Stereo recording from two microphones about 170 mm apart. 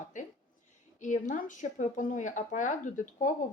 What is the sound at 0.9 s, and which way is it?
A woman's voice, 50° left (ahead or behind).